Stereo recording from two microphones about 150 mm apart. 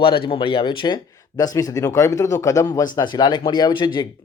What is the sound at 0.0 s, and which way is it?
Speech, 35° left (ahead or behind).